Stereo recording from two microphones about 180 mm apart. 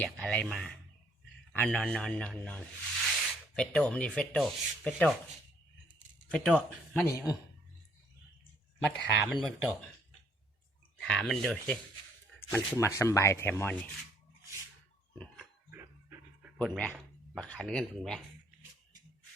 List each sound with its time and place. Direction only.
0.0 s speech: 5° left (ahead or behind)
1.5 s speech: 5° left (ahead or behind)
6.3 s speech: 5° left (ahead or behind)
8.8 s speech: centre (ahead or behind)
11.0 s speech: 5° left (ahead or behind)
15.7 s pant: 15° right (ahead or behind)
16.6 s speech: 5° left (ahead or behind)